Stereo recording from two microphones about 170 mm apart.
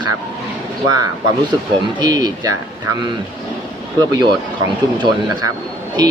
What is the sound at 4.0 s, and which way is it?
Speech, 25° right (ahead or behind).